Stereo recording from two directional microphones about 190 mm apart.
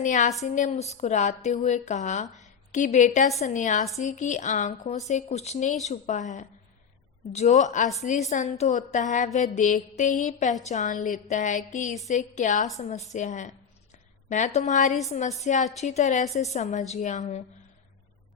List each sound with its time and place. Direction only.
0.0 s mantra: 40° left (ahead or behind)
2.4 s a woman's voice: 40° left (ahead or behind)
3.9 s mantra: 40° left (ahead or behind)